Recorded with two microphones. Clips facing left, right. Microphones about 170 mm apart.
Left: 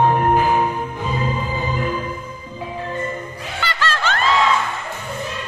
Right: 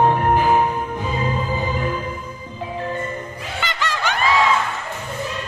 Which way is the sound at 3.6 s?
20° right (ahead or behind).